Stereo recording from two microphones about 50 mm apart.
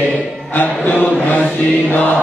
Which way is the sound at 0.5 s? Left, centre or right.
Left.